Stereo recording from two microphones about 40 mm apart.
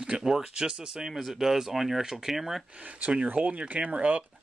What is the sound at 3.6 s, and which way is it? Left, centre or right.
Speech, right.